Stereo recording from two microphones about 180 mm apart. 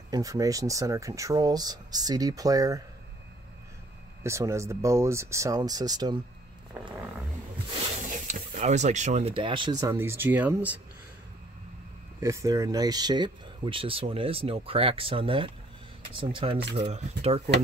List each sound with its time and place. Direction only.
0.1 s speech: 20° right (ahead or behind)
4.2 s speech: 15° right (ahead or behind)
6.8 s speech: 10° right (ahead or behind)
8.1 s speech: 40° right (ahead or behind); by 10.8 s 10° right (ahead or behind)
12.2 s speech: 15° right (ahead or behind); by 17.4 s 35° right (ahead or behind)